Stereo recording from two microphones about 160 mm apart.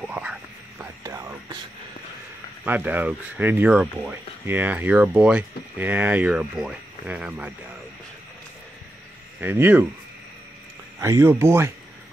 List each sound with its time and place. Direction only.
0.0 s whispering: 5° right (ahead or behind)
1.0 s music: 20° right (ahead or behind)
2.6 s speech: 10° right (ahead or behind)
9.4 s speech: 10° right (ahead or behind)
11.0 s speech: 15° right (ahead or behind)